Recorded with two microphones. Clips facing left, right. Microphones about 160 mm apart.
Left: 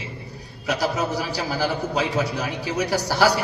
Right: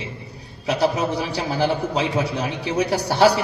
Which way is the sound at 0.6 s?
30° right (ahead or behind).